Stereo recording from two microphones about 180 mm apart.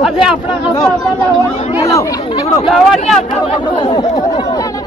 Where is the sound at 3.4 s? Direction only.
30° left (ahead or behind).